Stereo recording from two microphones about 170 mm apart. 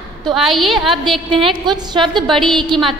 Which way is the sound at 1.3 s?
30° right (ahead or behind).